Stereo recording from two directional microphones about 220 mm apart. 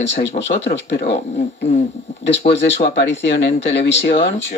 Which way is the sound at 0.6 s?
55° left (ahead or behind).